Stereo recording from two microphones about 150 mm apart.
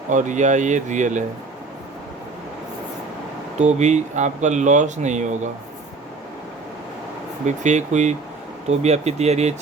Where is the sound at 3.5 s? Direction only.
50° right (ahead or behind).